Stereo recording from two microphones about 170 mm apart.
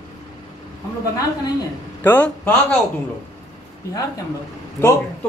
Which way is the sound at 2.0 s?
10° left (ahead or behind).